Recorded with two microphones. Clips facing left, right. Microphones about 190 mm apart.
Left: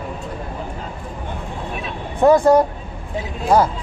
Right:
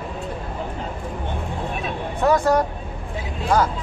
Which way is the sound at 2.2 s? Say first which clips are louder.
Left 6 dB; 30° left (ahead or behind).